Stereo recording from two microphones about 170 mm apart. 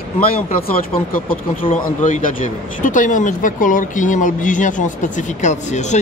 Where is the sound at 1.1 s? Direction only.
55° left (ahead or behind).